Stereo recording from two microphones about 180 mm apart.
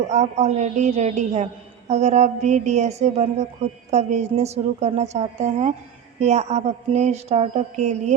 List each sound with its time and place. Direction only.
0.0 s a woman's voice: 40° right (ahead or behind)